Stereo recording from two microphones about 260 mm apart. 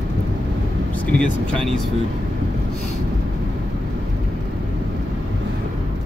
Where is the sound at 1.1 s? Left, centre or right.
Centre.